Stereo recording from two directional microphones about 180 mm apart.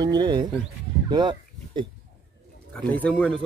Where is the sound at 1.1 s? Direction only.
25° right (ahead or behind).